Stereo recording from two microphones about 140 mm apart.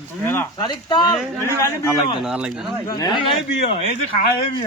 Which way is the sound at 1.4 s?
20° left (ahead or behind).